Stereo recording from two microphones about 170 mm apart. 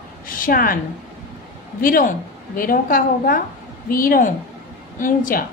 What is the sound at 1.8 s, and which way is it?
A woman's voice, 55° left (ahead or behind).